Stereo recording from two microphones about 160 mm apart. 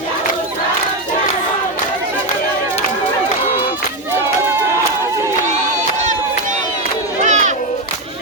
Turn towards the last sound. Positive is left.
turn(degrees=-45)  # may be behind; listen again after turning